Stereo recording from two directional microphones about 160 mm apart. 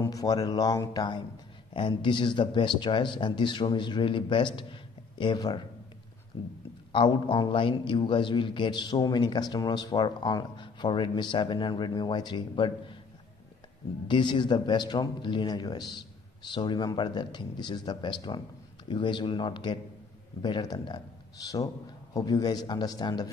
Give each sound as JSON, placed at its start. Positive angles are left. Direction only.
{"t": 0.0, "sound": "a man's voice", "side_deg": 20}
{"t": 14.0, "sound": "a man's voice", "side_deg": 30}
{"t": 22.1, "sound": "a man's voice", "side_deg": 25}